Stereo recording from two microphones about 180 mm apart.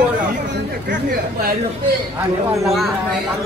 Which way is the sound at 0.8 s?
55° right (ahead or behind).